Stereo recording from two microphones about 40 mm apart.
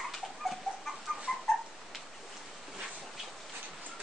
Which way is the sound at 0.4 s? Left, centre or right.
Centre.